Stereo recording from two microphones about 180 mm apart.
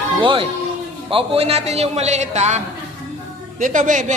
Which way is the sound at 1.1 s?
30° right (ahead or behind).